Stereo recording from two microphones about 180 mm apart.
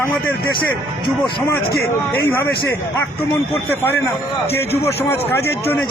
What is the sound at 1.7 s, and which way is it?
Speech, 60° left (ahead or behind).